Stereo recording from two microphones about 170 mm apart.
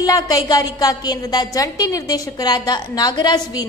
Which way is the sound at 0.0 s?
20° left (ahead or behind).